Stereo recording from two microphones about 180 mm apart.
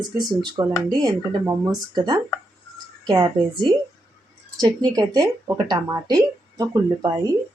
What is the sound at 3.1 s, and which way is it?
Speech, 25° right (ahead or behind).